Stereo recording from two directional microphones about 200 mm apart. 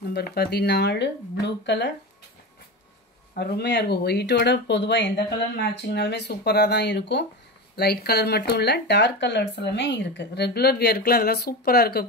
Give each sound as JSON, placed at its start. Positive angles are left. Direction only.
{"t": 0.1, "sound": "speech", "side_deg": 50}
{"t": 3.3, "sound": "speech", "side_deg": 55}